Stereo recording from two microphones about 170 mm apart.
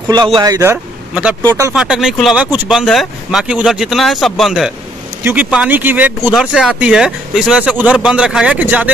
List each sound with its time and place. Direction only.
0.4 s speech: 20° right (ahead or behind)
1.8 s speech: 5° right (ahead or behind)